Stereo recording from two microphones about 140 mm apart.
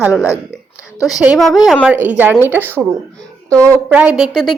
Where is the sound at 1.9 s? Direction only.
10° right (ahead or behind).